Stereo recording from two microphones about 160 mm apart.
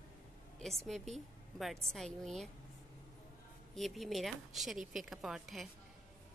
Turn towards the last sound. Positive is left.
turn(degrees=0)  # may be behind; listen again after turning